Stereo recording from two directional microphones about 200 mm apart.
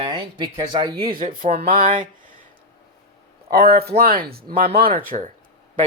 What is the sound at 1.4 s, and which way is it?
Speech, 45° right (ahead or behind).